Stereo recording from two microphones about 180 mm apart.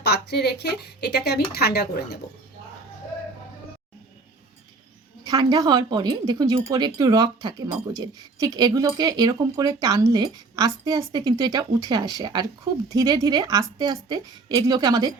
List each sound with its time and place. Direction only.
0.0 s speech: 65° left (ahead or behind)
5.2 s speech: 25° right (ahead or behind)